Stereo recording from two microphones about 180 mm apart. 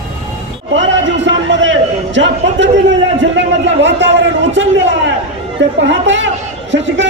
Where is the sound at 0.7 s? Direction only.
90° right.